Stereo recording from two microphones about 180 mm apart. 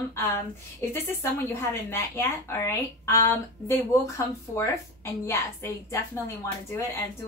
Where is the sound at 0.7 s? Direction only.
15° left (ahead or behind).